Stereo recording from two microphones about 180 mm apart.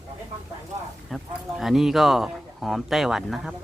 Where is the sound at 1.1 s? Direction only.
Centre (ahead or behind).